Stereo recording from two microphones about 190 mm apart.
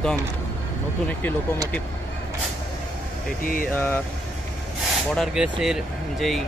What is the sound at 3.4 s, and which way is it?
Speech, 50° left (ahead or behind).